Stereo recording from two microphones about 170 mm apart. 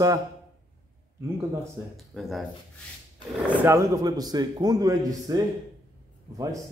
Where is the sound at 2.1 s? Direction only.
Centre (ahead or behind).